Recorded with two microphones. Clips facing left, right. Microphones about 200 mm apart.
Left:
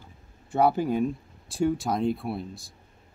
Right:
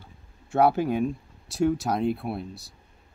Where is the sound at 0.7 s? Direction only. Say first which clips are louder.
Even; 60° right (ahead or behind).